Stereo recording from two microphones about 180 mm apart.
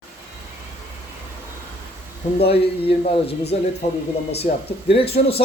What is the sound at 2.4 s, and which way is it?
A man's voice, 35° left (ahead or behind).